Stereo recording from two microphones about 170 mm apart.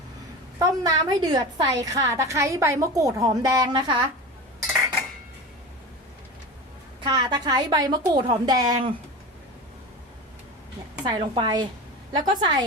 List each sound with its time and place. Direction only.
0.6 s a woman's voice: 20° right (ahead or behind)
7.1 s a woman's voice: 25° right (ahead or behind)
11.0 s a woman's voice: 25° right (ahead or behind)